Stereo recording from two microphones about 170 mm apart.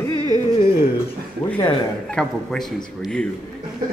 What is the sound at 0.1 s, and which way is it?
Music, 25° right (ahead or behind).